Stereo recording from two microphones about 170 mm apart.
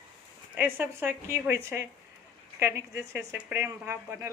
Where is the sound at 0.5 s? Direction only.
10° right (ahead or behind).